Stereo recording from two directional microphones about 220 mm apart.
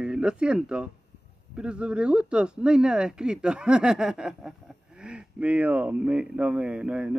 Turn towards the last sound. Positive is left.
turn(degrees=-5)  # may be behind; listen again after turning